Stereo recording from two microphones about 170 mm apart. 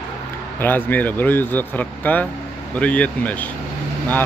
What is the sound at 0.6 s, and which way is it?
Speech, 10° left (ahead or behind).